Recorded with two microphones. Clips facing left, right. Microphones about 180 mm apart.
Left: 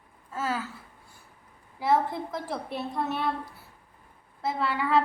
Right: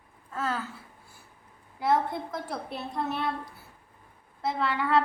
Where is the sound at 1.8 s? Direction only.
Centre (ahead or behind).